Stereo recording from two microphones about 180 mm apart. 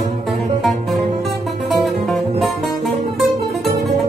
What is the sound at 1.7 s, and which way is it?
Music, centre (ahead or behind).